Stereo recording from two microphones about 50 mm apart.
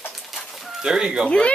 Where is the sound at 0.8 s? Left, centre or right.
Centre.